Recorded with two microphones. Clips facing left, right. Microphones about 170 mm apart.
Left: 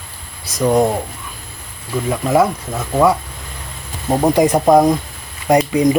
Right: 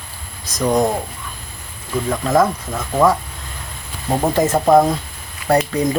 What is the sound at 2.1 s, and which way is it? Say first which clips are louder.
Speech: left 1 dB; 10° left (ahead or behind).